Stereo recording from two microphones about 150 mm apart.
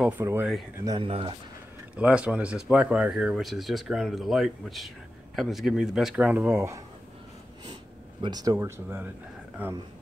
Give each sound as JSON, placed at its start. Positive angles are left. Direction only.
{"t": 0.2, "sound": "speech", "side_deg": -15}
{"t": 0.7, "sound": "speech", "side_deg": -25}
{"t": 1.0, "sound": "speech", "side_deg": -40}
{"t": 2.0, "sound": "speech", "side_deg": -10}
{"t": 7.6, "sound": "speech", "side_deg": -30}